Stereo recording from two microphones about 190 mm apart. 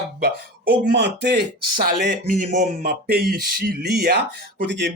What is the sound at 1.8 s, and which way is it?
Speech, 50° right (ahead or behind).